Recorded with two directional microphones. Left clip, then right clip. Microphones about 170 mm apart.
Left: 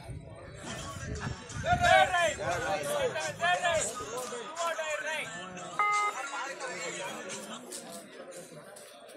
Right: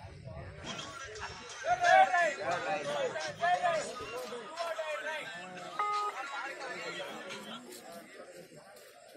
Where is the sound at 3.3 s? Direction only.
30° left (ahead or behind); by 6.8 s 50° left (ahead or behind).